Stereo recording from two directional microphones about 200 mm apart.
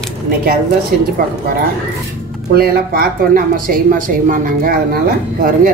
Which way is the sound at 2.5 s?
50° right (ahead or behind).